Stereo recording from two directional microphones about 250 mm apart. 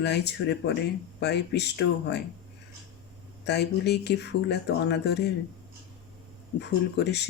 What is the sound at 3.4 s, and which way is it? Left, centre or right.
Speech, left.